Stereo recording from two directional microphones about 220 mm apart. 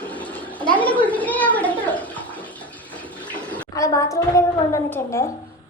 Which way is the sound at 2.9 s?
5° left (ahead or behind).